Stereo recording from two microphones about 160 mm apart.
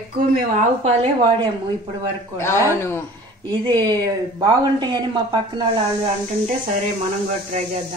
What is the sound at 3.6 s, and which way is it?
Speech, 25° right (ahead or behind).